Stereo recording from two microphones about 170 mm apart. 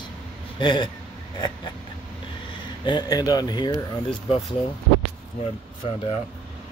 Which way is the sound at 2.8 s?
25° left (ahead or behind).